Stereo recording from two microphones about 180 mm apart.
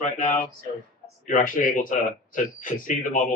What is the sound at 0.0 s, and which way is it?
Speech, 45° left (ahead or behind).